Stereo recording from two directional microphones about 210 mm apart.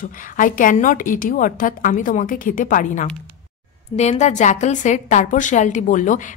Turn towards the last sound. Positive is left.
turn(degrees=35)  # may be behind; listen again after turning